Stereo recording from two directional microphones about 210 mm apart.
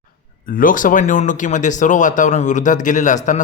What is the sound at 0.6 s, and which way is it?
A man's voice, 40° left (ahead or behind).